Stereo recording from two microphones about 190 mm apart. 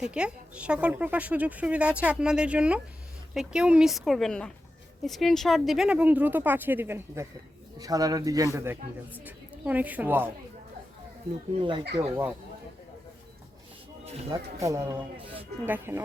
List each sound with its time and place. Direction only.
0.0 s a woman's voice: 5° right (ahead or behind)
11.9 s a woman's voice: 15° right (ahead or behind)
14.3 s a woman's voice: 15° right (ahead or behind)